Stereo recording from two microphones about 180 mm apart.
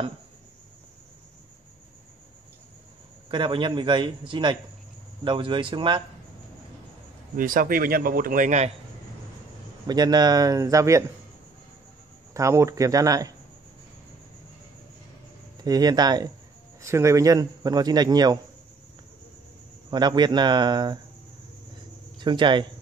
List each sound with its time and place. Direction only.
3.3 s a man's voice: 25° right (ahead or behind)
7.3 s a man's voice: 50° right (ahead or behind)
9.8 s a man's voice: 20° right (ahead or behind)
12.4 s a man's voice: 15° right (ahead or behind)
15.6 s a man's voice: 20° right (ahead or behind)
19.9 s a man's voice: 25° right (ahead or behind)
22.2 s a man's voice: 25° right (ahead or behind)